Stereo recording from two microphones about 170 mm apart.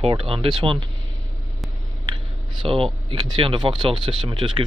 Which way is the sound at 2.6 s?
30° right (ahead or behind).